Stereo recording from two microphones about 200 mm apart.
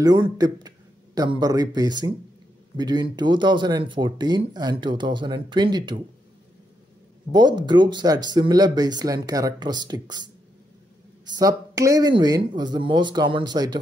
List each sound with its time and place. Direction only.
0.0 s a man's voice: 20° right (ahead or behind)
7.3 s speech: 20° right (ahead or behind)